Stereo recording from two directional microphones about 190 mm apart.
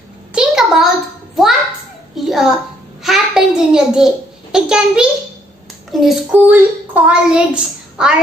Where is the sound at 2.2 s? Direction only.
Centre (ahead or behind).